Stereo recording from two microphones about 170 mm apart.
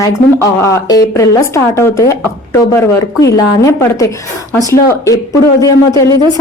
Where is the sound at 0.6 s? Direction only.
20° left (ahead or behind).